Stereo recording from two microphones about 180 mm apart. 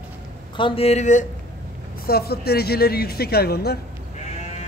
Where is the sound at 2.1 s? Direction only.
60° left (ahead or behind).